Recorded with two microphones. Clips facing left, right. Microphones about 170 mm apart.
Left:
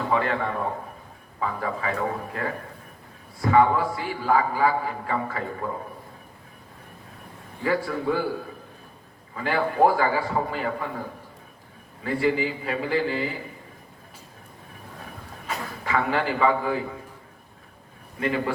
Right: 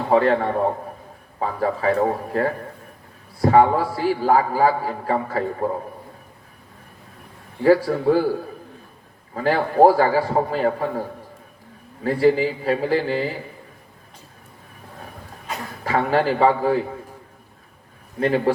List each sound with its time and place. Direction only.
0.1 s a man's voice: 35° right (ahead or behind)
7.6 s a man's voice: 35° right (ahead or behind)
9.3 s a man's voice: 40° right (ahead or behind)
12.0 s a man's voice: 35° right (ahead or behind)
15.8 s a man's voice: 35° right (ahead or behind)
18.2 s a man's voice: 40° right (ahead or behind)